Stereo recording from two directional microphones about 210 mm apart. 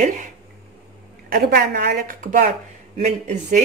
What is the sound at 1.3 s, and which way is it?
A woman's voice, 50° right (ahead or behind).